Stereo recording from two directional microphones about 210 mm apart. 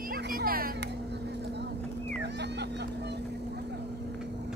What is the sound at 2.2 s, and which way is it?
Vehicle, 55° right (ahead or behind).